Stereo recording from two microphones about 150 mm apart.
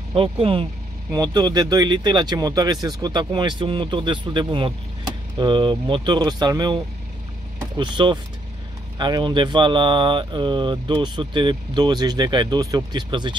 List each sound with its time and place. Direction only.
0.1 s speech: 35° right (ahead or behind)